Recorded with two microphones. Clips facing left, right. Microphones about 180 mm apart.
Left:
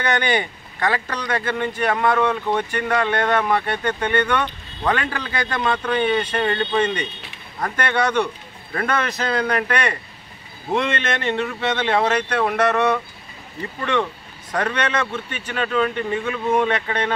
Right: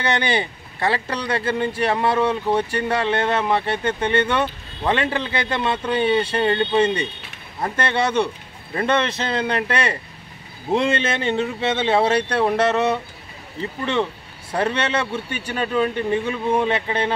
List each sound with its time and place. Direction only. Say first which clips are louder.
0.0 s speech: even; 25° right (ahead or behind)